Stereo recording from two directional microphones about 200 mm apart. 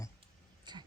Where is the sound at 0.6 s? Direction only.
20° right (ahead or behind).